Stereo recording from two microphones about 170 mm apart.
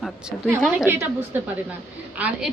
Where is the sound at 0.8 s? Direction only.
10° right (ahead or behind).